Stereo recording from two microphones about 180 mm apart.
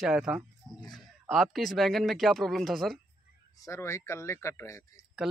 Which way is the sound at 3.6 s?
15° left (ahead or behind).